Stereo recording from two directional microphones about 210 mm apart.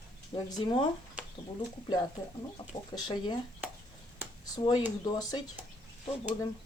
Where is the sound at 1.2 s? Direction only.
5° right (ahead or behind).